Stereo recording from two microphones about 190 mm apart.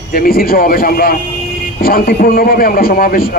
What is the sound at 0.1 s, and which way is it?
A man's voice, 50° left (ahead or behind).